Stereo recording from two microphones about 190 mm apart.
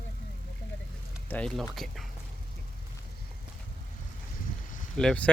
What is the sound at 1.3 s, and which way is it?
Speech, 5° left (ahead or behind).